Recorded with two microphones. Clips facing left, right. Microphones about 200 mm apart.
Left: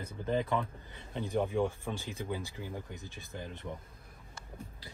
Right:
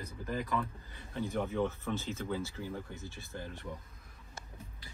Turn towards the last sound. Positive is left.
turn(degrees=20)  # may be behind; listen again after turning